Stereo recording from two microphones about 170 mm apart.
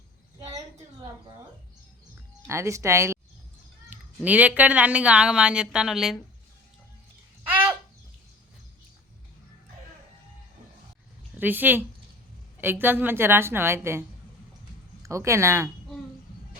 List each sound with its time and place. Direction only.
2.5 s a woman's voice: 15° right (ahead or behind)
11.3 s a woman's voice: 10° right (ahead or behind)
15.0 s a woman's voice: 15° right (ahead or behind)